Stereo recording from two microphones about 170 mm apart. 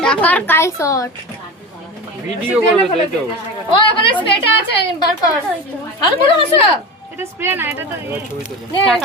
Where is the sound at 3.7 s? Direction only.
30° left (ahead or behind).